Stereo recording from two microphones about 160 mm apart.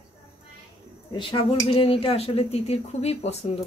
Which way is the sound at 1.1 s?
35° left (ahead or behind).